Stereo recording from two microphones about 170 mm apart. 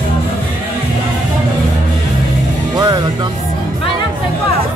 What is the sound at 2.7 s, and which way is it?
Speech, 20° right (ahead or behind).